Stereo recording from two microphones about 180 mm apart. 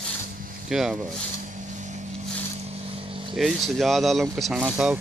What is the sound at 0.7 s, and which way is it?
Speech, 5° right (ahead or behind).